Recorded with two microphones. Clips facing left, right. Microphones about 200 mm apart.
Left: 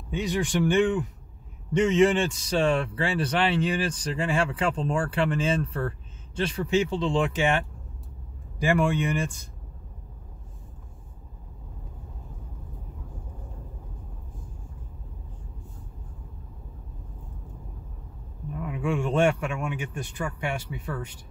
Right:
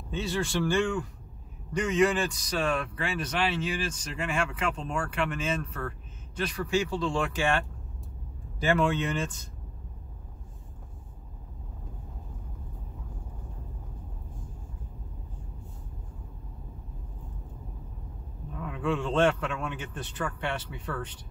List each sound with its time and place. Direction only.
0.1 s a man's voice: 15° left (ahead or behind)
18.5 s a man's voice: 10° left (ahead or behind)